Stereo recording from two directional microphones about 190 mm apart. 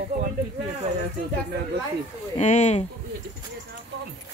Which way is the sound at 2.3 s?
35° left (ahead or behind).